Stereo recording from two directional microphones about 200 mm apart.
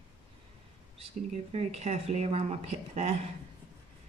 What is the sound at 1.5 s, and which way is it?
Speech, 30° right (ahead or behind).